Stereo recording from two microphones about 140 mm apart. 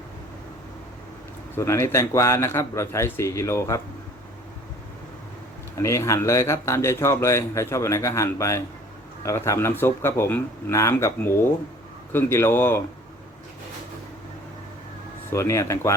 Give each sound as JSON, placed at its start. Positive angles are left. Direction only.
{"t": 1.5, "sound": "a man's voice", "side_deg": 20}
{"t": 5.7, "sound": "a man's voice", "side_deg": 20}
{"t": 15.3, "sound": "a man's voice", "side_deg": 20}